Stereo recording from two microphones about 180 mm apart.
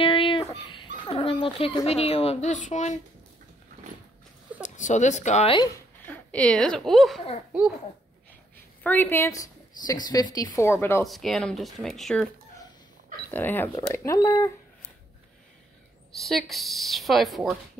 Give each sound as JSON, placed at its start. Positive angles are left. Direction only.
{"t": 0.0, "sound": "a sound", "side_deg": 30}
{"t": 1.9, "sound": "speech", "side_deg": 35}
{"t": 4.6, "sound": "speech", "side_deg": 40}
{"t": 6.0, "sound": "a woman's voice", "side_deg": 10}
{"t": 8.8, "sound": "speech", "side_deg": 10}
{"t": 11.1, "sound": "a woman's voice", "side_deg": 0}
{"t": 13.3, "sound": "speech", "side_deg": 10}
{"t": 16.2, "sound": "a woman's voice", "side_deg": 0}